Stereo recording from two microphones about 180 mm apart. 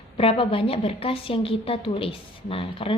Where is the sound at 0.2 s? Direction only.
30° left (ahead or behind).